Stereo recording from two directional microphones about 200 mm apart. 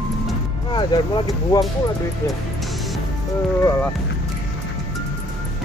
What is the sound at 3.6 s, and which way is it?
Speech, 10° left (ahead or behind).